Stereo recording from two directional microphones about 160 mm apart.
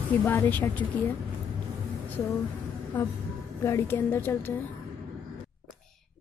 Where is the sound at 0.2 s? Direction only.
10° left (ahead or behind).